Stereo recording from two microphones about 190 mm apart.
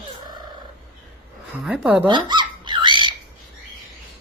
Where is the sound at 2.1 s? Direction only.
25° right (ahead or behind).